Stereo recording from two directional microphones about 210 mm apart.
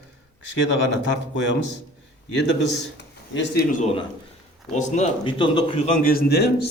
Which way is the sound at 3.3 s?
45° left (ahead or behind).